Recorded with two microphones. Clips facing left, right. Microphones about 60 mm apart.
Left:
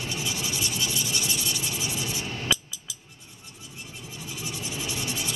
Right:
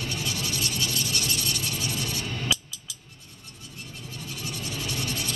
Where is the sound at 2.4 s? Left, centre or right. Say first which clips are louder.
Left 1 dB; centre.